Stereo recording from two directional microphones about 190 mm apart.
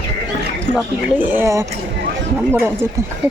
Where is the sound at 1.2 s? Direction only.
10° right (ahead or behind).